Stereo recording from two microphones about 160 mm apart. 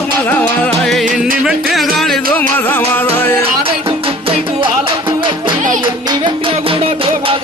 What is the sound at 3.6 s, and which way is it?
Music, 35° right (ahead or behind).